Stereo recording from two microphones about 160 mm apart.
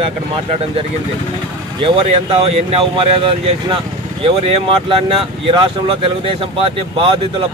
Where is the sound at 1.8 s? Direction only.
35° right (ahead or behind).